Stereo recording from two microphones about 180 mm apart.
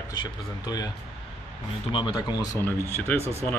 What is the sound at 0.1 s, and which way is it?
Speech, 25° left (ahead or behind).